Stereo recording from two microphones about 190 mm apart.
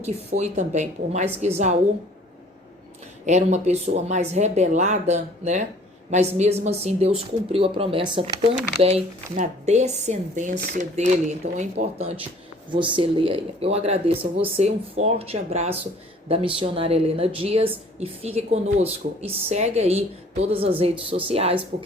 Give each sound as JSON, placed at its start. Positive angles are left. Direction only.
{"t": 0.0, "sound": "speech", "side_deg": -35}
{"t": 3.2, "sound": "speech", "side_deg": -40}
{"t": 10.6, "sound": "speech", "side_deg": -55}
{"t": 10.9, "sound": "speech", "side_deg": -40}
{"t": 12.7, "sound": "speech", "side_deg": -25}